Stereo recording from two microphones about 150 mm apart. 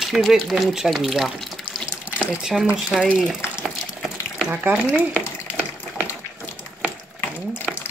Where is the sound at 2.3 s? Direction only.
5° right (ahead or behind).